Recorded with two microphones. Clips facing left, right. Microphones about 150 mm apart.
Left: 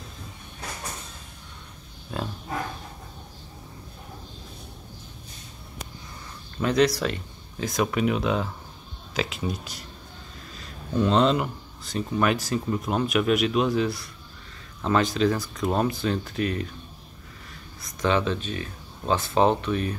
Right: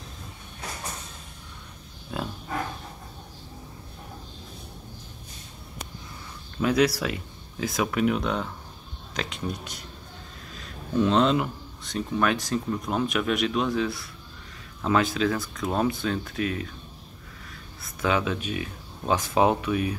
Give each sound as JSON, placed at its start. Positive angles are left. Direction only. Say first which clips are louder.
{"t": 2.1, "sound": "speech", "louder": "even", "side_deg": 0}
{"t": 6.6, "sound": "speech", "louder": "left 1 dB", "side_deg": -5}
{"t": 17.8, "sound": "speech", "louder": "left 2 dB", "side_deg": -5}